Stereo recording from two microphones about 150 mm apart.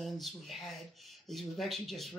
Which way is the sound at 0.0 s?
Centre (ahead or behind).